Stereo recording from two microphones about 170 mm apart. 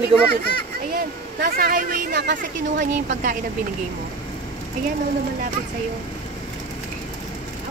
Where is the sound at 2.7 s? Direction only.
50° right (ahead or behind).